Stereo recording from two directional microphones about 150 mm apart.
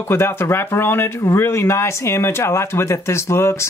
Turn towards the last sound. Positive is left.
turn(degrees=20)  # may be behind; listen again after turning